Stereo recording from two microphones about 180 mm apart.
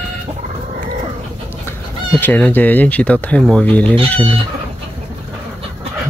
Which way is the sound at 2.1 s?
10° left (ahead or behind).